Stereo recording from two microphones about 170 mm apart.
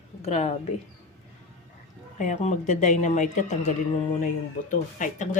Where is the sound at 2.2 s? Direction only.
45° left (ahead or behind).